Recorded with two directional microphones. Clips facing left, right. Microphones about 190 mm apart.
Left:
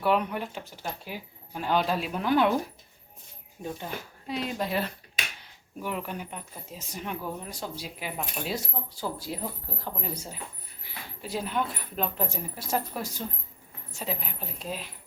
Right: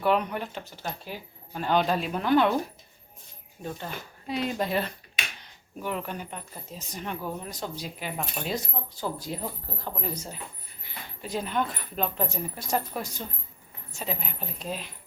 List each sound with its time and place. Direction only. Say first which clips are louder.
0.0 s speech: right 1 dB; 5° left (ahead or behind)
3.6 s speech: even; 10° left (ahead or behind)
4.3 s speech: right 2 dB; centre (ahead or behind)